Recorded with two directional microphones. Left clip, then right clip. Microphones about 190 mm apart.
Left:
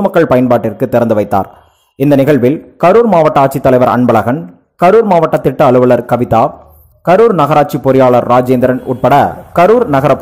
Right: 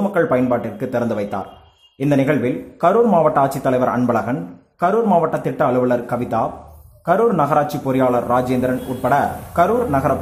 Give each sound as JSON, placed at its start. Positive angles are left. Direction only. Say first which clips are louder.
{"t": 0.1, "sound": "a man's voice", "louder": "left 6 dB", "side_deg": 45}